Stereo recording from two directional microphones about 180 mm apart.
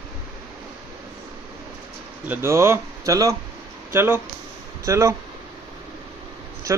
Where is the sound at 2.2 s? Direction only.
10° right (ahead or behind).